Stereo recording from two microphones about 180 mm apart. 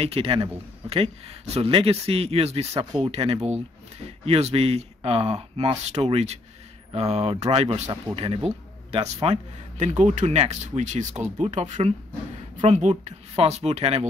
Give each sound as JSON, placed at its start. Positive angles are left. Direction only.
{"t": 0.0, "sound": "speech", "side_deg": -30}